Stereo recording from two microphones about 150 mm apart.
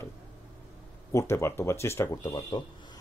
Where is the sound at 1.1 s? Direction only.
20° left (ahead or behind).